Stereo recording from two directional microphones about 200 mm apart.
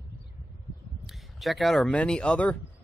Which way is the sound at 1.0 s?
Centre (ahead or behind).